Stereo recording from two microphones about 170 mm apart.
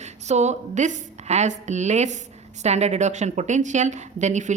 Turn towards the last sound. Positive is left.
turn(degrees=-45)  # may be behind; listen again after turning